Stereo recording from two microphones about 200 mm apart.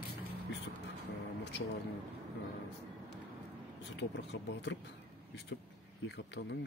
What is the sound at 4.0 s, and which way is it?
Speech, 60° left (ahead or behind).